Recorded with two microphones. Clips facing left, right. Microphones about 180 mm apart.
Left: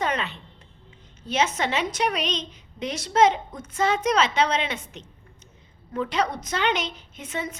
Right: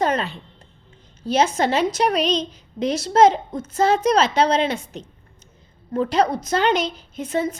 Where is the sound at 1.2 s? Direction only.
35° right (ahead or behind).